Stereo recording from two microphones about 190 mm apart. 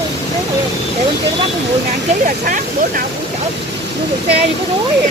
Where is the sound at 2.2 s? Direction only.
45° right (ahead or behind).